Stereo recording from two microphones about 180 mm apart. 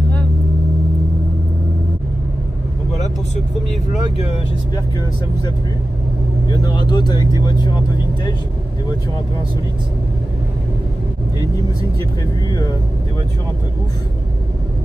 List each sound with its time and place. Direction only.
6.5 s speech: 20° left (ahead or behind)
12.4 s speech: 20° left (ahead or behind)